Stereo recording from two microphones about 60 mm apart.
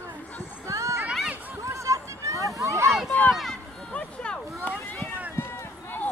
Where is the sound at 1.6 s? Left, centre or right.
Right.